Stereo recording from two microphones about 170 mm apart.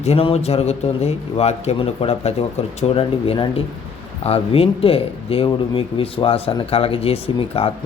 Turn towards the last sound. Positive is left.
turn(degrees=35)  # may be behind; listen again after turning